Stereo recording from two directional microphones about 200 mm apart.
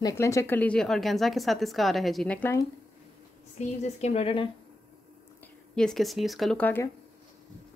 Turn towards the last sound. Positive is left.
turn(degrees=10)  # may be behind; listen again after turning